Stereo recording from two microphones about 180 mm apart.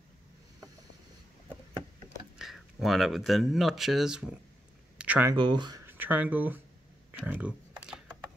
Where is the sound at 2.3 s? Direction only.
Centre (ahead or behind).